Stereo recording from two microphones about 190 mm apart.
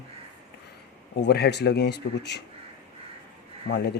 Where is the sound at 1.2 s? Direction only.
60° left (ahead or behind).